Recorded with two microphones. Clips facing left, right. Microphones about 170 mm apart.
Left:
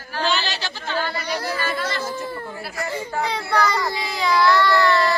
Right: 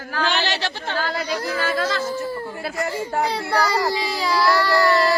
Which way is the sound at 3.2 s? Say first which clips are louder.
Left 2 dB; 35° right (ahead or behind).